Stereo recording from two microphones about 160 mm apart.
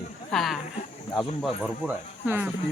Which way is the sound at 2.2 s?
10° right (ahead or behind).